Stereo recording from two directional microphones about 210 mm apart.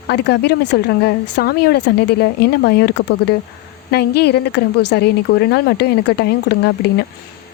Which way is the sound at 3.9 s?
50° left (ahead or behind).